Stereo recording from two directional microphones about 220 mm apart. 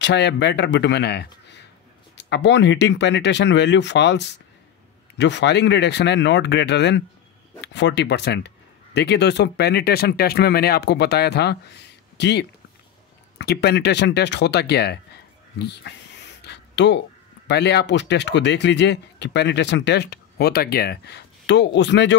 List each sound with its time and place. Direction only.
0.0 s speech: 50° left (ahead or behind)
16.4 s a sound: 55° left (ahead or behind)
17.5 s speech: 50° left (ahead or behind)